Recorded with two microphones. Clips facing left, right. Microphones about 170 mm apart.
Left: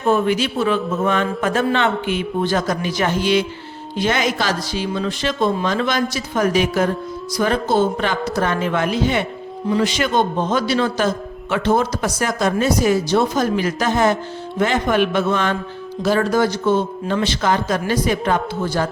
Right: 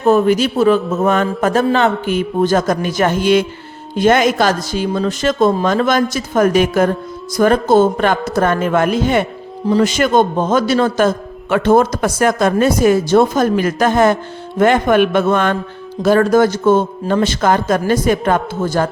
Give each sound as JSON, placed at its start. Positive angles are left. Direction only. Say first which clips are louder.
{"t": 0.0, "sound": "a man's voice", "louder": "right 5 dB", "side_deg": -40}